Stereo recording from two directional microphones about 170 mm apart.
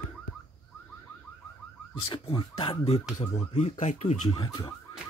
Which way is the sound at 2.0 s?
30° left (ahead or behind).